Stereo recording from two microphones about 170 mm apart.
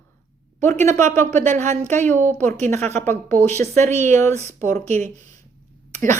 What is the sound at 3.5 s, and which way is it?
Speech, 15° left (ahead or behind).